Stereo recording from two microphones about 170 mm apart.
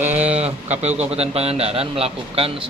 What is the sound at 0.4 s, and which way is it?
Speech, 40° right (ahead or behind).